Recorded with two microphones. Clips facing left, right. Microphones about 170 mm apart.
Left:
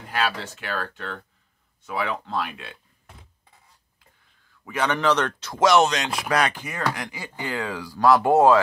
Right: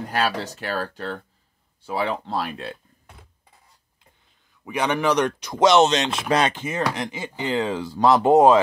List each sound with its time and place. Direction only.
0.4 s speech: 40° right (ahead or behind)
4.5 s speech: 15° right (ahead or behind)